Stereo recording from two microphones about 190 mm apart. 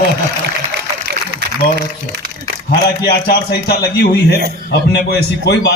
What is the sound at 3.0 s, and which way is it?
A man's voice, 60° left (ahead or behind).